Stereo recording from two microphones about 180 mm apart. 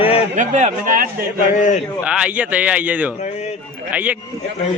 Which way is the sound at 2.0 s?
5° right (ahead or behind).